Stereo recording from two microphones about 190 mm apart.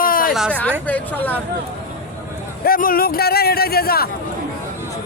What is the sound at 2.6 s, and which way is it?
A man's voice, 50° left (ahead or behind).